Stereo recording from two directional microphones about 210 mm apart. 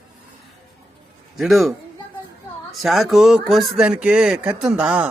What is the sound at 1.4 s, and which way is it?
Speech, centre (ahead or behind).